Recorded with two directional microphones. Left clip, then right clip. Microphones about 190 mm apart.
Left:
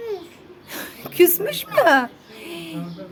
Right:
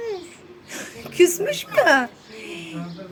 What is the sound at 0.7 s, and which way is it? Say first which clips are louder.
Speech: left 1 dB; 20° left (ahead or behind).